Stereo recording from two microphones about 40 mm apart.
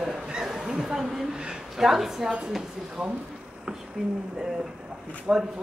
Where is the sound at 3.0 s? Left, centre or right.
Centre.